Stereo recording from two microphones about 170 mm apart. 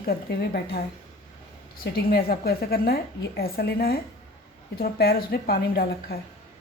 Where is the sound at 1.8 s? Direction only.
60° left (ahead or behind).